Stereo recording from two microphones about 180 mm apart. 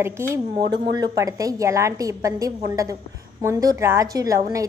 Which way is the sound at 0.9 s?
20° right (ahead or behind).